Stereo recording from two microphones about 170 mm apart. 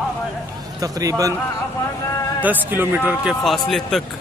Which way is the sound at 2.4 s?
10° right (ahead or behind).